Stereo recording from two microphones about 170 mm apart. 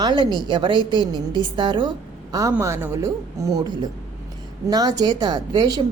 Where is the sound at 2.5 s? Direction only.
15° right (ahead or behind).